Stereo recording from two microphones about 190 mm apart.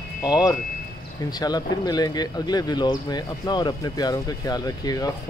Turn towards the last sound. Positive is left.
turn(degrees=20)  # may be behind; listen again after turning